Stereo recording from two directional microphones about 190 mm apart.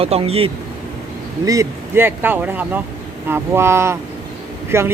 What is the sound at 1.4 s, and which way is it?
Speech, 15° right (ahead or behind).